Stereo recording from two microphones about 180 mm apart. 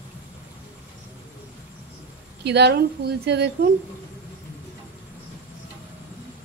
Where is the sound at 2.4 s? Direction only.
70° right (ahead or behind).